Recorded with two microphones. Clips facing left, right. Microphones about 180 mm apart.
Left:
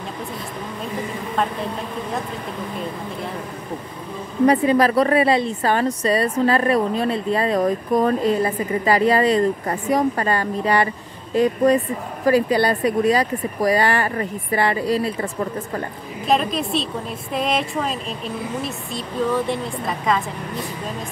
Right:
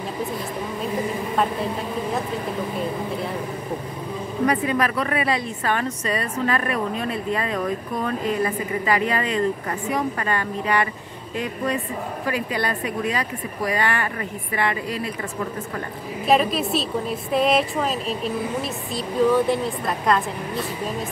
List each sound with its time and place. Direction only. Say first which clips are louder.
1.3 s speech: even; centre (ahead or behind)
4.5 s a woman's voice: left 7 dB; 30° left (ahead or behind)
16.3 s speech: right 1 dB; 5° right (ahead or behind)